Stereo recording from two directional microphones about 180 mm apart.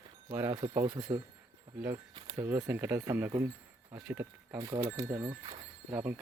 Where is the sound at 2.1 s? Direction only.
25° right (ahead or behind).